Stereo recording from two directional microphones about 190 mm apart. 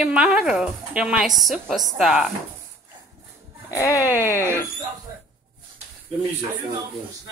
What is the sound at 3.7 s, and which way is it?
Speech, 15° left (ahead or behind).